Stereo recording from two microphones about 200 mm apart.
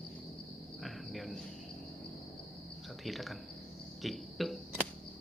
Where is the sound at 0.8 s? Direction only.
Centre (ahead or behind).